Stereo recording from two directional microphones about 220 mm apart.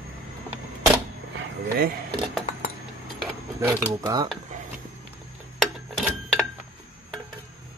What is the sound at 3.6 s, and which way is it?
Speech, 10° right (ahead or behind).